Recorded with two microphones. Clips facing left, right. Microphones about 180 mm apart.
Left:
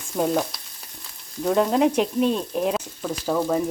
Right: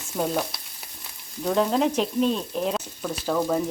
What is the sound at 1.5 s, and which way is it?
Speech, 5° left (ahead or behind).